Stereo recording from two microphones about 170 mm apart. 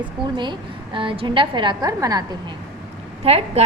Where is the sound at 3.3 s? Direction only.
35° right (ahead or behind).